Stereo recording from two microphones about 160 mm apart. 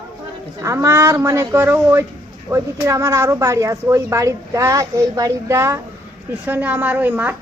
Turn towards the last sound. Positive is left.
turn(degrees=-10)  # may be behind; listen again after turning